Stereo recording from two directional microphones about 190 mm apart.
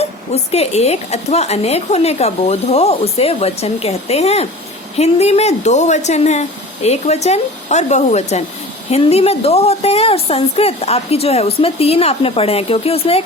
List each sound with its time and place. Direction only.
0.5 s a woman's voice: 35° left (ahead or behind)